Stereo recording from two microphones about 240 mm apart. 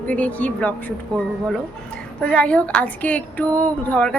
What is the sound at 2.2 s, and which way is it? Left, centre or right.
Speech, centre.